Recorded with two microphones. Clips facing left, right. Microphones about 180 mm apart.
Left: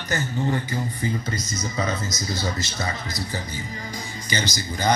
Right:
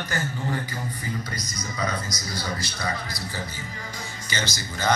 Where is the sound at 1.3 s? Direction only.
25° left (ahead or behind).